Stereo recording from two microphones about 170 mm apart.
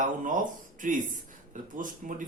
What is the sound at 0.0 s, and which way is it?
Speech, 50° right (ahead or behind).